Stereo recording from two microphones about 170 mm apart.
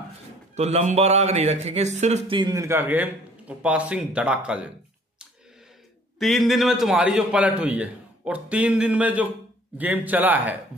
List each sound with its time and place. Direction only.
0.6 s speech: 40° right (ahead or behind)
2.3 s a man's voice: 20° right (ahead or behind); by 4.6 s 5° right (ahead or behind)
6.1 s a man's voice: centre (ahead or behind)